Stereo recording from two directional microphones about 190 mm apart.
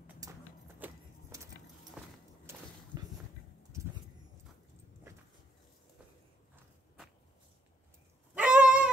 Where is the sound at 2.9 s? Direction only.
15° right (ahead or behind).